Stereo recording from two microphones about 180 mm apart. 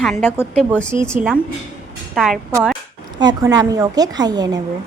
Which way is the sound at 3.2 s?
20° right (ahead or behind).